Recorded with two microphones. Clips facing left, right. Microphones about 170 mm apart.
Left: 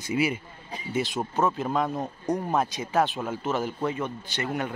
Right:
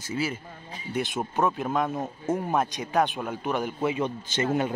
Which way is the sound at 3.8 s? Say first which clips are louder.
Right 2 dB; 15° right (ahead or behind).